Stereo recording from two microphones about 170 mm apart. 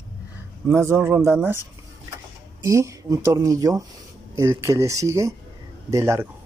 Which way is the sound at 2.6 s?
20° right (ahead or behind).